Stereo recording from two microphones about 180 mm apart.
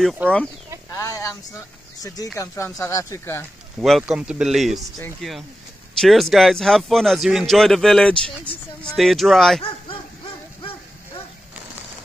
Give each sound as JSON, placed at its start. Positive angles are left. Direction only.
{"t": 0.2, "sound": "speech", "side_deg": -10}
{"t": 0.9, "sound": "a sound", "side_deg": 20}
{"t": 2.3, "sound": "speech", "side_deg": 15}
{"t": 3.8, "sound": "speech", "side_deg": 0}
{"t": 9.6, "sound": "dog", "side_deg": 30}